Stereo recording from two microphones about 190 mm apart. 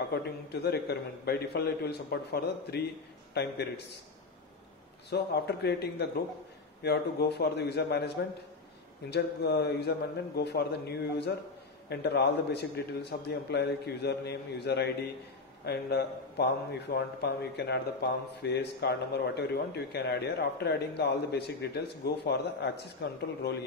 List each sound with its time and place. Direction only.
0.1 s speech: 60° left (ahead or behind)
5.1 s speech: 60° left (ahead or behind)
9.1 s a man's voice: 60° left (ahead or behind)